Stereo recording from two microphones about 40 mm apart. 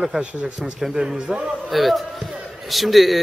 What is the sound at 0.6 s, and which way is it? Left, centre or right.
Speech, centre.